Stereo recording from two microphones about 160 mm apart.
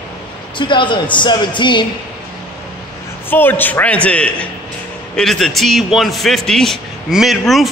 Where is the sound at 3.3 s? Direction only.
10° left (ahead or behind).